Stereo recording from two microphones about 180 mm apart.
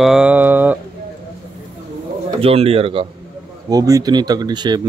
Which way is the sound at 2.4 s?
35° right (ahead or behind).